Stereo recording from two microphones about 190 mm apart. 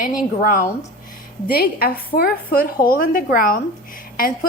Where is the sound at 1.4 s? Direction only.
55° left (ahead or behind).